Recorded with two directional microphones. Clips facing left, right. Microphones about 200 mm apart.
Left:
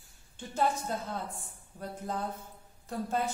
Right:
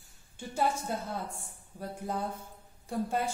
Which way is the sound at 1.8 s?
10° right (ahead or behind).